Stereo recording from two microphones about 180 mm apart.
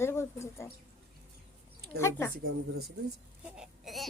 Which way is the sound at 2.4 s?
60° right (ahead or behind).